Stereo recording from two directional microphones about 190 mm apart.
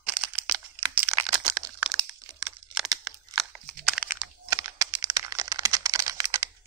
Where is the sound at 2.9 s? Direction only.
20° right (ahead or behind).